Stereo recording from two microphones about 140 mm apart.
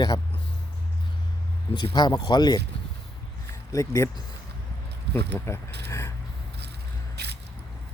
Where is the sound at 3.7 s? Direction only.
20° left (ahead or behind).